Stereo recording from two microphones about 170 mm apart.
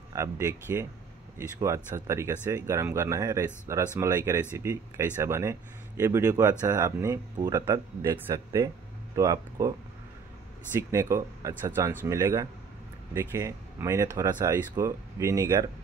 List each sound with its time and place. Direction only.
0.1 s speech: 15° right (ahead or behind)